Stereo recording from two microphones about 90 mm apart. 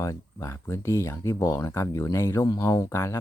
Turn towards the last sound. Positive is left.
turn(degrees=30)  # may be behind; listen again after turning